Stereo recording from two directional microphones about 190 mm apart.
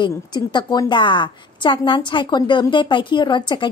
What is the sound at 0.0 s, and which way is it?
Speech, 25° left (ahead or behind).